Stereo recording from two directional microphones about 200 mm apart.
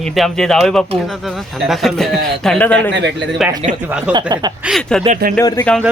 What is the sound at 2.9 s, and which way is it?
Speech, 60° right (ahead or behind).